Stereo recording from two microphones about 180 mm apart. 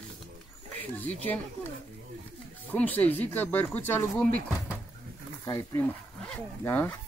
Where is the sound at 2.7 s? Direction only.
10° left (ahead or behind).